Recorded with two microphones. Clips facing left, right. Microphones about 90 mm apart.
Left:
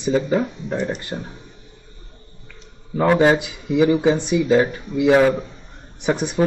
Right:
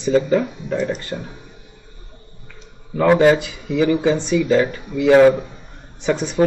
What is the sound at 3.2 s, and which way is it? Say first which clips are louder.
Speech: right 2 dB; 20° left (ahead or behind).